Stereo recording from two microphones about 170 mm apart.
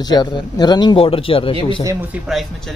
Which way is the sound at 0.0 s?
25° left (ahead or behind).